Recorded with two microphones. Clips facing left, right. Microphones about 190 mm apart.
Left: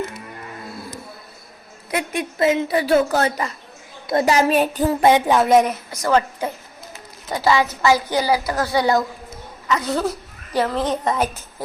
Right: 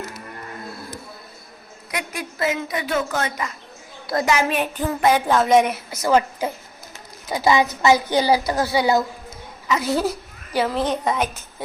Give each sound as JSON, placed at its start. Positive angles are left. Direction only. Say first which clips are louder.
{"t": 1.9, "sound": "a woman's voice", "louder": "left 6 dB", "side_deg": 25}
{"t": 5.3, "sound": "a woman's voice", "louder": "left 2 dB", "side_deg": 15}
{"t": 6.0, "sound": "a woman's voice", "louder": "even", "side_deg": -10}
{"t": 8.5, "sound": "a woman's voice", "louder": "even", "side_deg": -5}